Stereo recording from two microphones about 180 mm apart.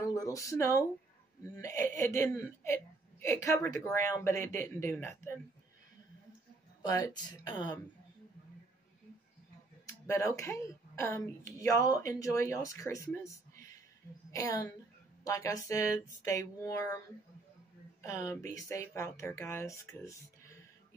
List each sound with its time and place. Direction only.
0.0 s a sound: 20° left (ahead or behind)
1.4 s speech: 15° left (ahead or behind)
6.8 s speech: 20° left (ahead or behind)
10.0 s speech: 15° left (ahead or behind)
18.0 s speech: 20° left (ahead or behind)